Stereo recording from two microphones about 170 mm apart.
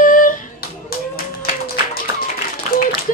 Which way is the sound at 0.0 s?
50° left (ahead or behind).